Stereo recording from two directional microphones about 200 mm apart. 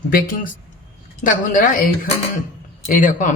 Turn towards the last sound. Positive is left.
turn(degrees=40)  # may be behind; listen again after turning